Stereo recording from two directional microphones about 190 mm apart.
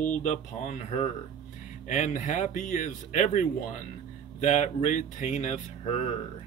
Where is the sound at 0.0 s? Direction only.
40° left (ahead or behind).